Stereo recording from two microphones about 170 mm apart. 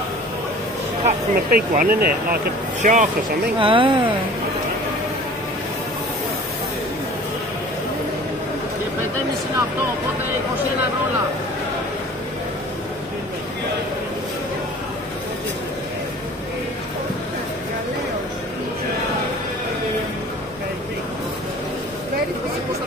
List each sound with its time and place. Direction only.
1.0 s speech: 50° right (ahead or behind)
3.5 s speech: 30° right (ahead or behind)